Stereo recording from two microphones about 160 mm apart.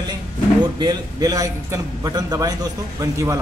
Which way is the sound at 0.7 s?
25° right (ahead or behind).